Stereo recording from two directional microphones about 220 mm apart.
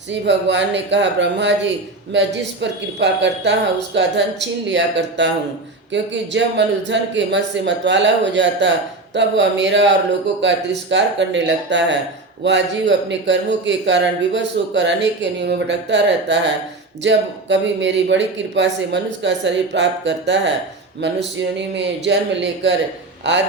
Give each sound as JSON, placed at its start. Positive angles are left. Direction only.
{"t": 0.1, "sound": "a man's voice", "side_deg": -55}